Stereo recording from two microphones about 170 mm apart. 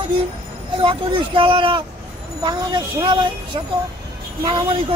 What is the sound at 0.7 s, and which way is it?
Speech, 30° right (ahead or behind).